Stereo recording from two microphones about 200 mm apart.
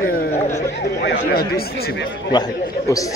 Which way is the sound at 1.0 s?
60° left (ahead or behind).